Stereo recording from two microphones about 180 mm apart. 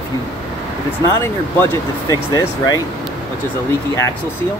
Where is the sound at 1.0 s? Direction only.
20° left (ahead or behind).